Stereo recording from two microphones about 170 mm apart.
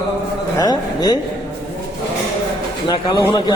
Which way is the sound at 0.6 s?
25° left (ahead or behind).